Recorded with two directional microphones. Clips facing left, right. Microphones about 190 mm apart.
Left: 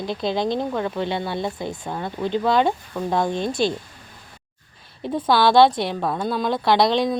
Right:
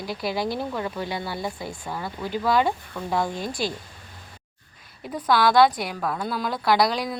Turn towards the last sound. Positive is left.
turn(degrees=25)  # may be behind; listen again after turning